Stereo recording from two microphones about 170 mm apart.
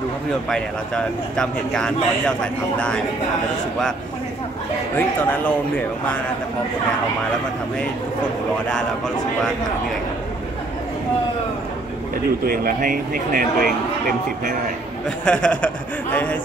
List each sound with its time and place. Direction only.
0.5 s speech: 5° left (ahead or behind)
4.9 s a man's voice: 10° left (ahead or behind)
8.6 s speech: 5° left (ahead or behind)
12.4 s speech: 55° right (ahead or behind)
15.0 s a man's voice: 5° left (ahead or behind)